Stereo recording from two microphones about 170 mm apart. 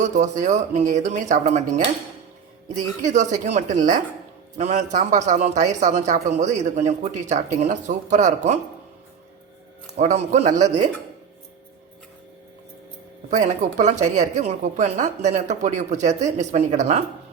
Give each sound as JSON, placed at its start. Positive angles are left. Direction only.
{"t": 0.0, "sound": "a man's voice", "side_deg": -45}
{"t": 10.0, "sound": "a man's voice", "side_deg": -40}
{"t": 13.3, "sound": "a man's voice", "side_deg": -50}